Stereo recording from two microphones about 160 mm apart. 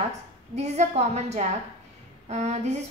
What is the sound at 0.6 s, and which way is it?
A woman's voice, 45° right (ahead or behind).